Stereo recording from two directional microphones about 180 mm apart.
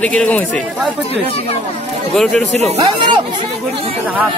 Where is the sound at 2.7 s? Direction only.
25° right (ahead or behind).